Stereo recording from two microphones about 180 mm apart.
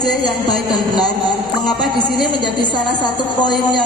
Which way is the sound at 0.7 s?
25° left (ahead or behind).